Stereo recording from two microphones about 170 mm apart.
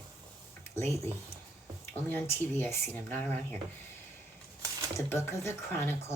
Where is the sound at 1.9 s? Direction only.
10° left (ahead or behind).